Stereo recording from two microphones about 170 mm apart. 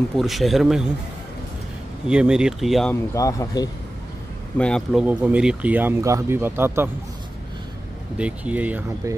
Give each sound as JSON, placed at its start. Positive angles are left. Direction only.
{"t": 0.1, "sound": "speech", "side_deg": 0}
{"t": 2.0, "sound": "speech", "side_deg": -5}
{"t": 2.9, "sound": "speech", "side_deg": 20}
{"t": 4.6, "sound": "speech", "side_deg": 5}
{"t": 5.0, "sound": "speech", "side_deg": -10}
{"t": 8.2, "sound": "speech", "side_deg": -10}